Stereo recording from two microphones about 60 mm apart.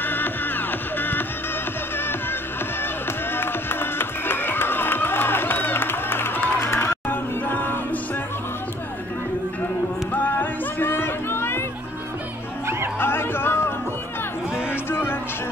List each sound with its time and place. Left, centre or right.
0.0 s music: left
3.3 s music: left
6.9 s music: left
10.1 s a sound: left
13.0 s chatter: left
14.7 s music: left